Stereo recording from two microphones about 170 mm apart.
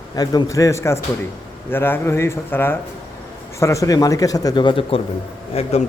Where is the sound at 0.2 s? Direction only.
20° left (ahead or behind).